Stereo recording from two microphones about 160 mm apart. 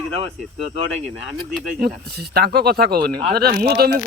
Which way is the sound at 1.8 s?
75° right (ahead or behind).